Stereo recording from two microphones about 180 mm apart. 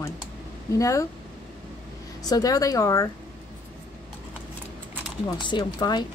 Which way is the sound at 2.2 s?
20° left (ahead or behind).